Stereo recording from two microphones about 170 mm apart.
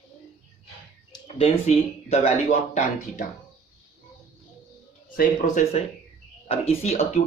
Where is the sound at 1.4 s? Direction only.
35° left (ahead or behind).